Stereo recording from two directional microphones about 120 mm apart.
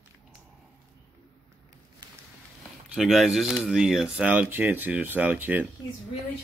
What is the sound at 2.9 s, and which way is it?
Speech, centre (ahead or behind).